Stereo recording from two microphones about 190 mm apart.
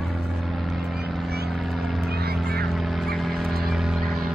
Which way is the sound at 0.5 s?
Centre (ahead or behind).